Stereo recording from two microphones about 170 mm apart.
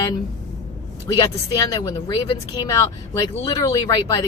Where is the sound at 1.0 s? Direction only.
25° left (ahead or behind).